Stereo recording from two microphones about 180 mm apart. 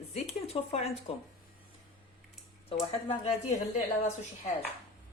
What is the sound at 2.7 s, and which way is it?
Speech, 35° left (ahead or behind).